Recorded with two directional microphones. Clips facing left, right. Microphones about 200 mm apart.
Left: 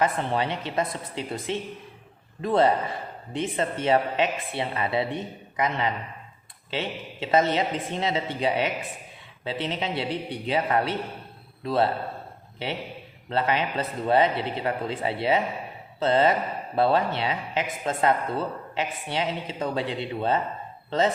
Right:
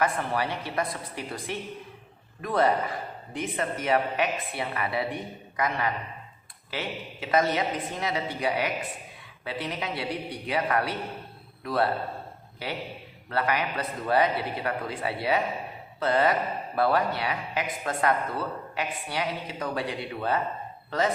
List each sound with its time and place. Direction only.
0.0 s a man's voice: 25° left (ahead or behind)